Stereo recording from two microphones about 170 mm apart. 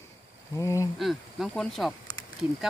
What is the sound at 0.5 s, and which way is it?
Speech, 20° left (ahead or behind).